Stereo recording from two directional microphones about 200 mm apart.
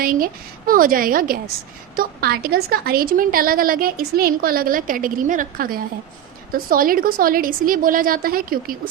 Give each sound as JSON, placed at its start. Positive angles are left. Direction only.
{"t": 0.0, "sound": "a woman's voice", "side_deg": -45}